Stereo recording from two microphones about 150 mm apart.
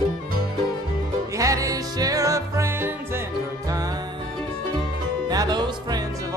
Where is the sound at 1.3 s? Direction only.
20° right (ahead or behind).